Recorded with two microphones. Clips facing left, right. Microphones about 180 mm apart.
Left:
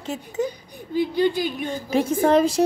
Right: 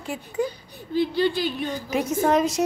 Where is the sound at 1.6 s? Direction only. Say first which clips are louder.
Left 3 dB; 30° left (ahead or behind).